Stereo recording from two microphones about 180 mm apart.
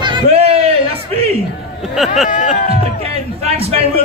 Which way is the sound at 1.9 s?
Centre (ahead or behind).